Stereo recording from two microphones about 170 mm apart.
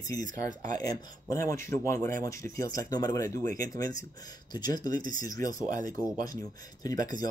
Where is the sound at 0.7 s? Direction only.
20° left (ahead or behind).